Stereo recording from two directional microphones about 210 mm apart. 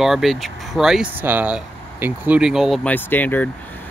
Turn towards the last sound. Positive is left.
turn(degrees=10)  # may be behind; listen again after turning